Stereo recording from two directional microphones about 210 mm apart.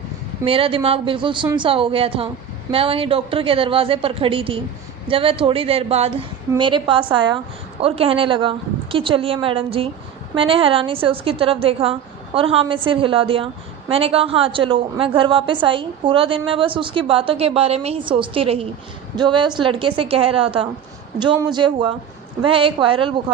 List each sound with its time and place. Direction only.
0.4 s a woman's voice: 25° right (ahead or behind)